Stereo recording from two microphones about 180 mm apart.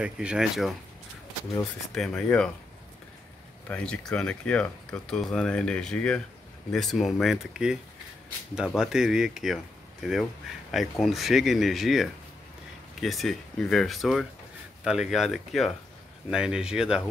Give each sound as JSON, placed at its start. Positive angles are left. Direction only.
{"t": 0.0, "sound": "speech", "side_deg": -5}
{"t": 2.0, "sound": "speech", "side_deg": 5}
{"t": 3.6, "sound": "speech", "side_deg": 5}